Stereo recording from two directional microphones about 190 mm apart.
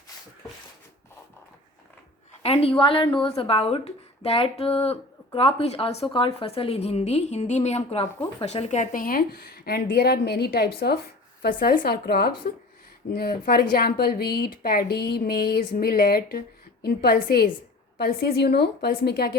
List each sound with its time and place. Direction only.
2.4 s a woman's voice: 30° left (ahead or behind); by 19.4 s 55° left (ahead or behind)